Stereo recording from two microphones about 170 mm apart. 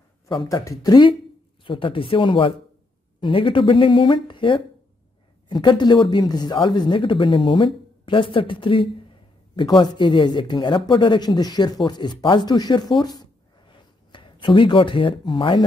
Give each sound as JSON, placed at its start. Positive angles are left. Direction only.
{"t": 0.3, "sound": "speech", "side_deg": 30}